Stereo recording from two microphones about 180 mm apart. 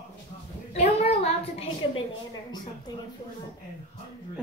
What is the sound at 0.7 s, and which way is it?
A woman's voice, 35° left (ahead or behind).